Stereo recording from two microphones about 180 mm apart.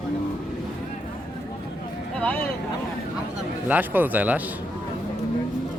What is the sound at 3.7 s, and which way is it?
Speech, 10° right (ahead or behind).